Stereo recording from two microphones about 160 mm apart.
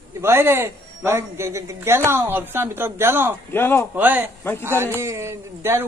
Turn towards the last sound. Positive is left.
turn(degrees=-15)  # may be behind; listen again after turning